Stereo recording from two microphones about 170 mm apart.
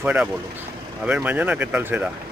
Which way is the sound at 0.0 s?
10° right (ahead or behind).